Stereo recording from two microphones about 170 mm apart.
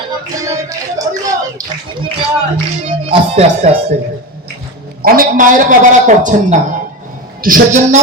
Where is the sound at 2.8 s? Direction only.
35° right (ahead or behind).